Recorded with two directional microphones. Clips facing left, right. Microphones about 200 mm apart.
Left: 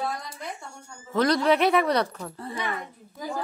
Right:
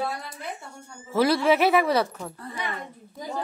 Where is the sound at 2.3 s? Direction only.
25° left (ahead or behind).